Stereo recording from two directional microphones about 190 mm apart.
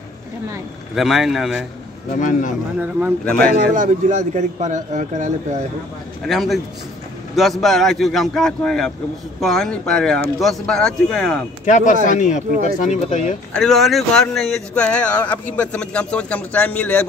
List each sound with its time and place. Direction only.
0.9 s speech: centre (ahead or behind)
2.1 s speech: 40° left (ahead or behind)
3.4 s a man's voice: 45° right (ahead or behind)
6.2 s speech: centre (ahead or behind)
11.6 s speech: 40° left (ahead or behind)
13.5 s speech: centre (ahead or behind)